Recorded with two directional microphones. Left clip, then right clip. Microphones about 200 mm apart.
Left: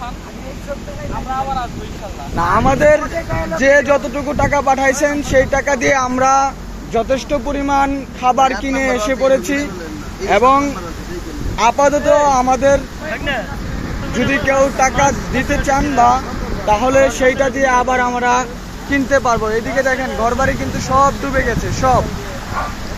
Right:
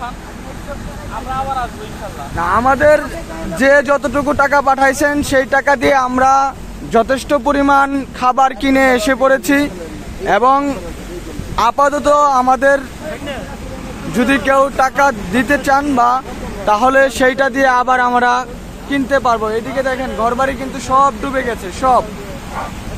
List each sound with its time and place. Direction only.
2.6 s speech: centre (ahead or behind)
3.5 s speech: 25° right (ahead or behind)
5.9 s speech: 15° right (ahead or behind)
6.9 s speech: 40° right (ahead or behind)
14.1 s speech: 25° right (ahead or behind)
18.3 s speech: 10° right (ahead or behind)